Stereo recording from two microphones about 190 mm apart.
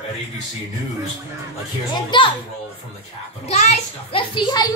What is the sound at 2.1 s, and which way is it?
Speech, 25° left (ahead or behind).